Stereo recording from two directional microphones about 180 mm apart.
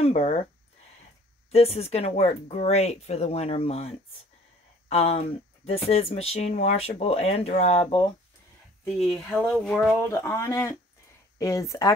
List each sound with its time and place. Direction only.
0.0 s speech: 35° left (ahead or behind)
1.5 s speech: 35° left (ahead or behind)
8.8 s speech: centre (ahead or behind)
10.0 s speech: 15° left (ahead or behind)